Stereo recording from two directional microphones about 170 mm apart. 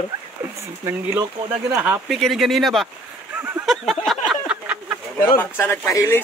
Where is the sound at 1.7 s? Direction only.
5° right (ahead or behind).